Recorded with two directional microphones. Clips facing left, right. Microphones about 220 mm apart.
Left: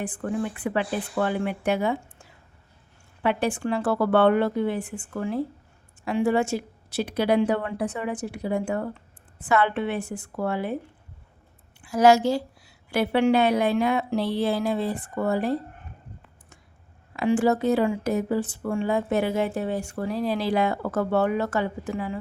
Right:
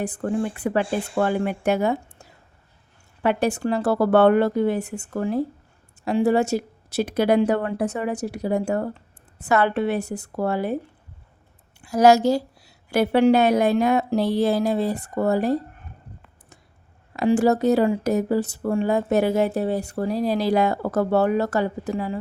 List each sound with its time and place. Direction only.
0.0 s speech: 40° right (ahead or behind)
0.3 s speech: 30° right (ahead or behind)
0.9 s speech: 25° right (ahead or behind)
1.2 s speech: 45° right (ahead or behind)
11.8 s speech: 40° right (ahead or behind)
17.2 s speech: 40° right (ahead or behind)